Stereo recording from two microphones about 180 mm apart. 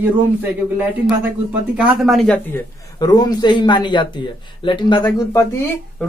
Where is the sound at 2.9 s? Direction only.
20° left (ahead or behind).